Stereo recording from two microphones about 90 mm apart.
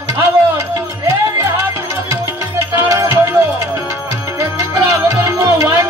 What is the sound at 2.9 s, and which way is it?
Music, 40° right (ahead or behind).